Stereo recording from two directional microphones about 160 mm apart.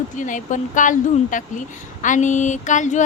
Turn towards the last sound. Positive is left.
turn(degrees=50)  # may be behind; listen again after turning